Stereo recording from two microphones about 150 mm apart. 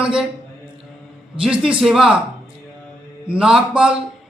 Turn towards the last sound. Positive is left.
turn(degrees=-5)  # may be behind; listen again after turning